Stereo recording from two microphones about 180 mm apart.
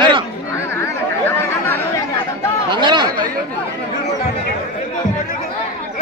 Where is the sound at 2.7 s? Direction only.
25° right (ahead or behind).